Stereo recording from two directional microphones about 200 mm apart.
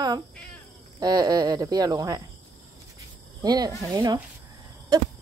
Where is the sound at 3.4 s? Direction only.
20° right (ahead or behind).